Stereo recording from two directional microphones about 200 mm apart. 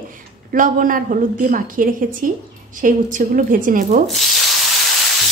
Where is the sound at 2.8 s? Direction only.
40° right (ahead or behind).